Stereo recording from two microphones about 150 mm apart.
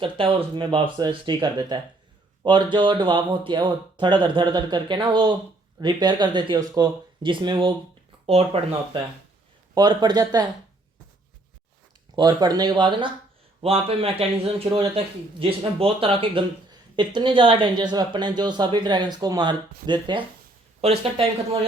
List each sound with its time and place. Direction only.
0.0 s speech: 35° right (ahead or behind)
9.7 s speech: 30° right (ahead or behind)
12.1 s speech: 25° right (ahead or behind)
20.8 s speech: 40° right (ahead or behind)